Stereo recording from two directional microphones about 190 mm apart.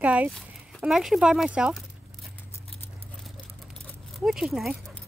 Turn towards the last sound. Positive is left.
turn(degrees=0)  # may be behind; listen again after turning